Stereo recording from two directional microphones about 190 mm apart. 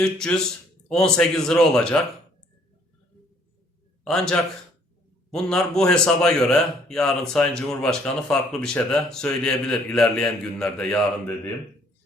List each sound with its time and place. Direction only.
0.0 s a man's voice: 5° left (ahead or behind)
4.0 s a man's voice: 5° left (ahead or behind)